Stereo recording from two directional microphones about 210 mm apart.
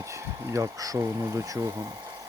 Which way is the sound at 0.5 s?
15° right (ahead or behind).